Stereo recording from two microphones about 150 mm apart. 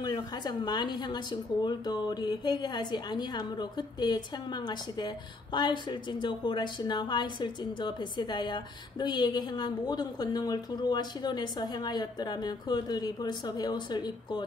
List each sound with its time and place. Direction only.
0.0 s a woman's voice: 25° left (ahead or behind)